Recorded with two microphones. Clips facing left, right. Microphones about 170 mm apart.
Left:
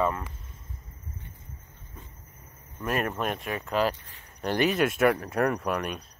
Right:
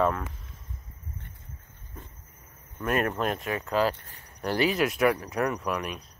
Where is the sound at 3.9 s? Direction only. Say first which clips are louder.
Right 1 dB; 45° right (ahead or behind).